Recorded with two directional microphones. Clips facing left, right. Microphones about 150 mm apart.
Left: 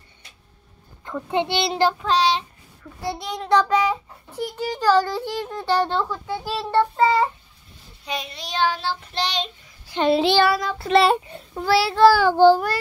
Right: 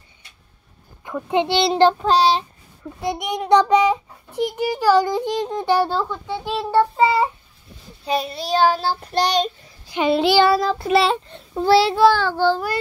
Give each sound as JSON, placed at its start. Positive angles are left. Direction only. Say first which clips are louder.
{"t": 1.0, "sound": "a child's voice", "louder": "right 3 dB", "side_deg": -15}
{"t": 2.8, "sound": "a child's voice", "louder": "right 4 dB", "side_deg": -20}
{"t": 6.0, "sound": "a child's voice", "louder": "right 1 dB", "side_deg": 5}
{"t": 6.8, "sound": "a child's voice", "louder": "right 1 dB", "side_deg": -10}
{"t": 8.0, "sound": "child singing", "louder": "right 8 dB", "side_deg": -35}
{"t": 10.0, "sound": "a child's voice", "louder": "right 1 dB", "side_deg": 0}
{"t": 10.4, "sound": "child singing", "louder": "right 4 dB", "side_deg": -30}
{"t": 11.0, "sound": "a child's voice", "louder": "left 5 dB", "side_deg": 5}
{"t": 11.5, "sound": "a child's voice", "louder": "right 5 dB", "side_deg": -25}
{"t": 12.0, "sound": "child singing", "louder": "left 3 dB", "side_deg": 10}